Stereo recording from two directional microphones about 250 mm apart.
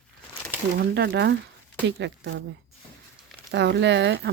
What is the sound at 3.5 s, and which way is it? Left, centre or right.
Speech, right.